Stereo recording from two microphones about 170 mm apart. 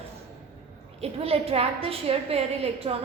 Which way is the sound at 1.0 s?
35° right (ahead or behind).